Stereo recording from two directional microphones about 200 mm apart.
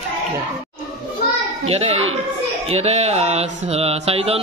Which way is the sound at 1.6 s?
30° right (ahead or behind).